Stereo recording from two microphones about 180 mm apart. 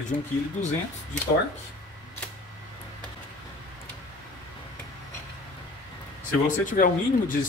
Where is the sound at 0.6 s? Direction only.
45° left (ahead or behind).